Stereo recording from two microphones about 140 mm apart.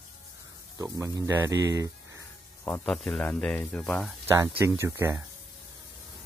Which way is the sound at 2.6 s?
15° left (ahead or behind).